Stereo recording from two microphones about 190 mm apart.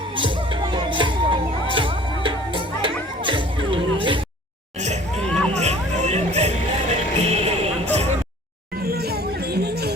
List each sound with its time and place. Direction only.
0.2 s music: 25° right (ahead or behind)
8.8 s music: 55° right (ahead or behind)